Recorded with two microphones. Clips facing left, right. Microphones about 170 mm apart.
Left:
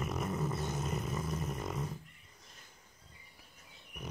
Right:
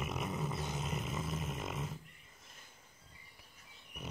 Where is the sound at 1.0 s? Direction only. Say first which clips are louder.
Left 2 dB; 20° right (ahead or behind).